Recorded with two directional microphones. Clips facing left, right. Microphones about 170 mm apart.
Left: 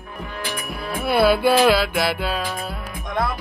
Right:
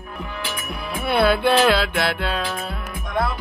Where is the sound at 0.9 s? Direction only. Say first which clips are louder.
Left 1 dB; 5° left (ahead or behind).